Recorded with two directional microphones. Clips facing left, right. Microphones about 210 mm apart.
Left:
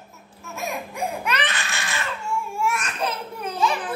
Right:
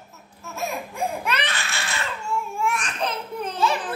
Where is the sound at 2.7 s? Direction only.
5° left (ahead or behind).